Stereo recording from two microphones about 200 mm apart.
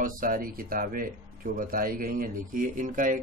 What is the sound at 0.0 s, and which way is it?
Speech, 45° right (ahead or behind).